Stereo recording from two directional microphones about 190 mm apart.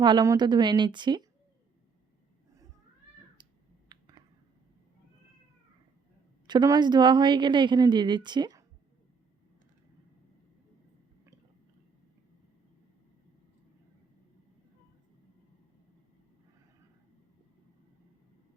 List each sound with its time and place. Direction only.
0.0 s a woman's voice: 20° right (ahead or behind)
3.8 s clicking: 20° right (ahead or behind)
6.5 s a woman's voice: 20° right (ahead or behind)